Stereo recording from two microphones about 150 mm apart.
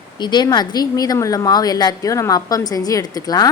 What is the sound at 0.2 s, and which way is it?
A woman's voice, 30° left (ahead or behind).